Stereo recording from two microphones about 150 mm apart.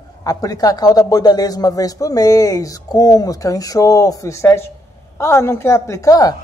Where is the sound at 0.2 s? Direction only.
25° left (ahead or behind).